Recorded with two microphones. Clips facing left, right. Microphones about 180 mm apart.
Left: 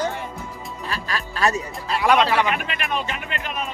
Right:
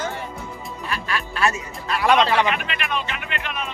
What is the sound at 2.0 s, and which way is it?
Speech, 10° left (ahead or behind).